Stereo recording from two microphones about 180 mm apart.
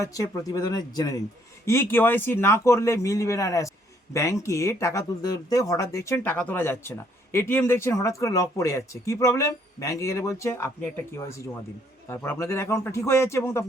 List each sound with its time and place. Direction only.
0.0 s speech: 20° left (ahead or behind)
12.0 s speech: 15° left (ahead or behind)